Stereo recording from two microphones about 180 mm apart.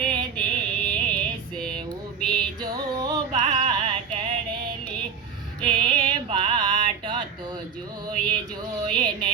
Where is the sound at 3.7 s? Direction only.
25° right (ahead or behind).